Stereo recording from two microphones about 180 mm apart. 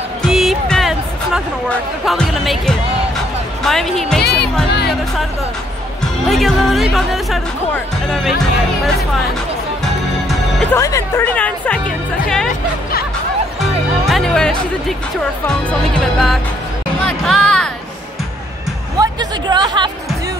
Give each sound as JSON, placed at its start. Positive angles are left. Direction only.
{"t": 0.3, "sound": "music", "side_deg": 0}
{"t": 3.6, "sound": "speech", "side_deg": 0}
{"t": 4.2, "sound": "music", "side_deg": 65}
{"t": 6.2, "sound": "speech", "side_deg": 0}
{"t": 10.6, "sound": "speech", "side_deg": 15}
{"t": 14.0, "sound": "music", "side_deg": 0}
{"t": 16.0, "sound": "speech", "side_deg": 0}
{"t": 17.0, "sound": "music", "side_deg": 5}
{"t": 18.9, "sound": "music", "side_deg": -25}